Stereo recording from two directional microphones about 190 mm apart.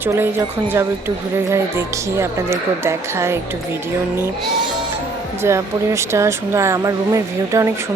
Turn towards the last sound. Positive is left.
turn(degrees=-15)  # may be behind; listen again after turning